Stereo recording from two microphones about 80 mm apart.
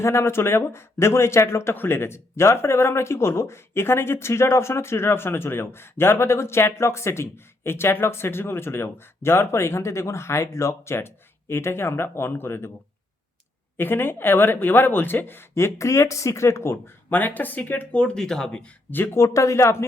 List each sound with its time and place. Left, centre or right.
0.0 s speech: left
13.7 s speech: left; by 18.7 s centre
18.9 s speech: left
19.1 s speech: left